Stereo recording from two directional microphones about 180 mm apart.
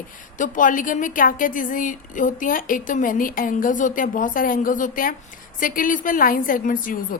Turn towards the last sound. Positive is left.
turn(degrees=50)  # may be behind; listen again after turning